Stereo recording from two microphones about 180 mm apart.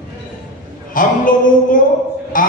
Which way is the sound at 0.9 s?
50° left (ahead or behind).